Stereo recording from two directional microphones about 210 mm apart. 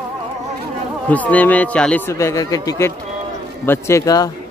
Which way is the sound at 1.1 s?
5° left (ahead or behind).